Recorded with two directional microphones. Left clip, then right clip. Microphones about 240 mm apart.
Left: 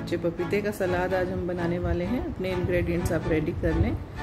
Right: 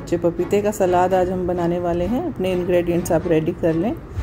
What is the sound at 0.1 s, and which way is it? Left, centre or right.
Speech, centre.